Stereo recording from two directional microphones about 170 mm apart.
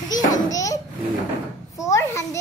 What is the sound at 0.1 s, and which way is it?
Babbling, 20° left (ahead or behind).